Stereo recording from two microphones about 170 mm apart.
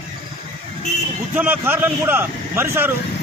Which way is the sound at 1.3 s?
10° right (ahead or behind).